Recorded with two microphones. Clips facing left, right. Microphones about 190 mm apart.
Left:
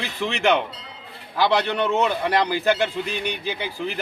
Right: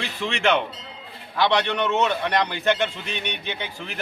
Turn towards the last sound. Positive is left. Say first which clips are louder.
# left 4 dB
turn(degrees=0)  # may be behind; listen again after turning